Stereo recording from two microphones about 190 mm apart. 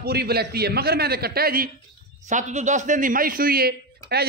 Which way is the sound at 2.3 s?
40° right (ahead or behind).